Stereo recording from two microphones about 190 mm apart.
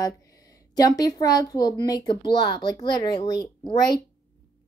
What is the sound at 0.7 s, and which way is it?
Speech, 20° left (ahead or behind).